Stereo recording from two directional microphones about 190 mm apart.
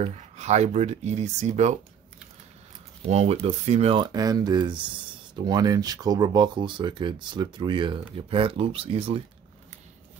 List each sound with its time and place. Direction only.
0.0 s speech: 35° right (ahead or behind)
3.1 s speech: 35° right (ahead or behind)